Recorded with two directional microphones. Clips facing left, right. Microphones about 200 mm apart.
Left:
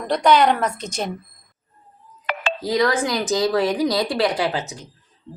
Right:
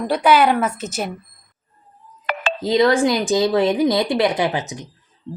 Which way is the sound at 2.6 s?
25° right (ahead or behind).